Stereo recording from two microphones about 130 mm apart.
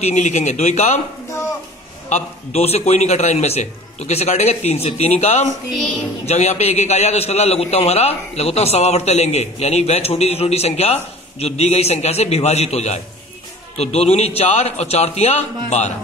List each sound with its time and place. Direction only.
0.0 s a man's voice: 65° left (ahead or behind)
2.0 s a man's voice: 60° left (ahead or behind)